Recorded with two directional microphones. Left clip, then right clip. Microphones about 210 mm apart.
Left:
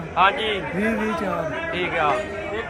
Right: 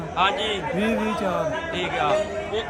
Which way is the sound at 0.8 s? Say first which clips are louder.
Even; 25° right (ahead or behind).